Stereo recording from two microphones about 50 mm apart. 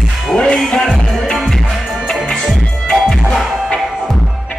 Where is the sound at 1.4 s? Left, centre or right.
Centre.